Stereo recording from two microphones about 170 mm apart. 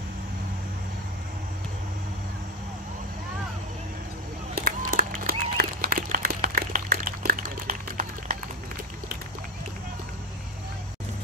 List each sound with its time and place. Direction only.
4.6 s applause: 55° right (ahead or behind)